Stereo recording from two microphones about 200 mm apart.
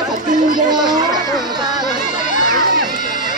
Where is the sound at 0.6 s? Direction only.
20° right (ahead or behind).